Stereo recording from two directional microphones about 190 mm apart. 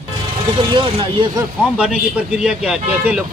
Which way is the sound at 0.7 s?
25° right (ahead or behind).